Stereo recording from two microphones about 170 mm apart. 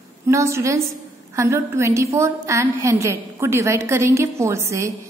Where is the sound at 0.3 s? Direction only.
15° right (ahead or behind).